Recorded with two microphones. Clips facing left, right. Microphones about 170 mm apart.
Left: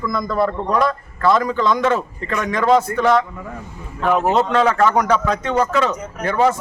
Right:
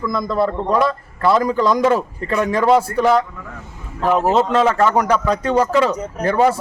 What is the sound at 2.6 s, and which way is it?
Speech, 10° right (ahead or behind).